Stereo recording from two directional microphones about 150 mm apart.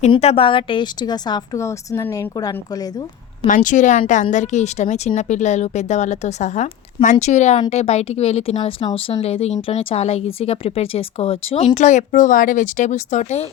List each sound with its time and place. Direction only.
0.1 s speech: 40° left (ahead or behind); by 2.9 s 25° left (ahead or behind)
3.4 s speech: 60° left (ahead or behind)